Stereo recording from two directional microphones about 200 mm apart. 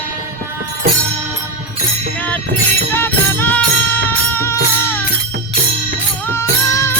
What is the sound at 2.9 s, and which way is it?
Music, 10° left (ahead or behind).